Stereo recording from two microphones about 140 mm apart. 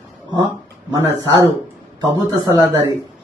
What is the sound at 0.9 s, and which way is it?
A man's voice, 20° right (ahead or behind).